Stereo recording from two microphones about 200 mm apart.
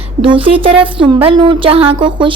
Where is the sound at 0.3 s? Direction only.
25° right (ahead or behind).